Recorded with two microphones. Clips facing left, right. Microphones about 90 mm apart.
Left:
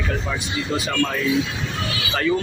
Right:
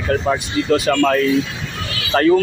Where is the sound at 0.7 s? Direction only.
75° right (ahead or behind).